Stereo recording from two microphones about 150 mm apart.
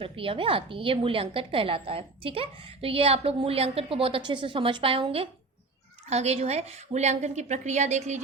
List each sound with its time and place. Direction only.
0.0 s a woman's voice: 35° right (ahead or behind)